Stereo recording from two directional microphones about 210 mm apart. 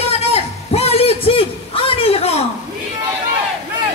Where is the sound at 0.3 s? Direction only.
30° left (ahead or behind).